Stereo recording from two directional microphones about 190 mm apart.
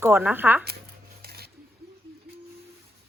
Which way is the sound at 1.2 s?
55° right (ahead or behind).